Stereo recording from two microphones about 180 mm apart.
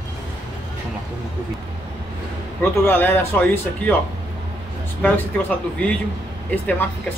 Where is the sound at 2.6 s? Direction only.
10° left (ahead or behind).